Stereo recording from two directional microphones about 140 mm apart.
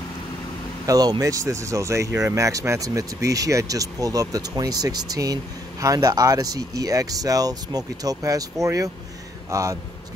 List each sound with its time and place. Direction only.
0.8 s speech: 25° right (ahead or behind)